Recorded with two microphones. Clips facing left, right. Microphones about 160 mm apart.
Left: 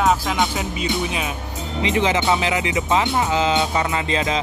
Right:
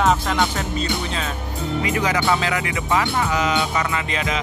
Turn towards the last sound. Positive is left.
turn(degrees=30)  # may be behind; listen again after turning